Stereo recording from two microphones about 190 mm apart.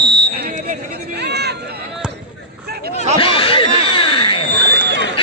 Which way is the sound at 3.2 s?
30° left (ahead or behind).